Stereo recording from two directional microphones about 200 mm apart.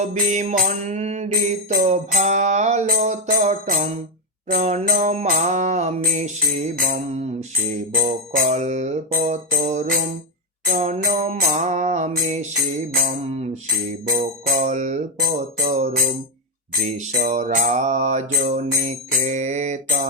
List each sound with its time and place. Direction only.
0.0 s music: 35° right (ahead or behind)